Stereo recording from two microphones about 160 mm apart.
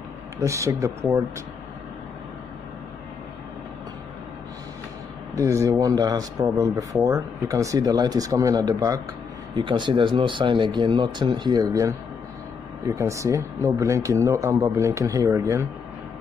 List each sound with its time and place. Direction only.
0.4 s speech: 20° right (ahead or behind)
5.3 s speech: 20° right (ahead or behind)